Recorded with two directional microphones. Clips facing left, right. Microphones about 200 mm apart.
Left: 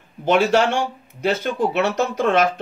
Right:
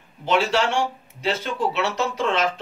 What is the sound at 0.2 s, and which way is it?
Speech, 50° left (ahead or behind).